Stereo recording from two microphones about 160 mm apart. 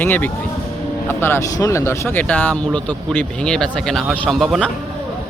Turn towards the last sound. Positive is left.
turn(degrees=0)  # may be behind; listen again after turning